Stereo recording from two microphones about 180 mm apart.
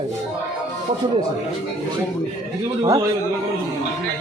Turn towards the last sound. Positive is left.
turn(degrees=-20)  # may be behind; listen again after turning